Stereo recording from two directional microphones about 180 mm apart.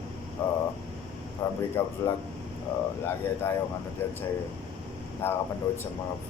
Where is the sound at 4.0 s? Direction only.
10° left (ahead or behind).